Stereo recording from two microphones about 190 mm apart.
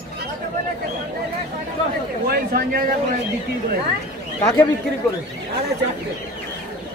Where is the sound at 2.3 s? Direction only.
50° right (ahead or behind).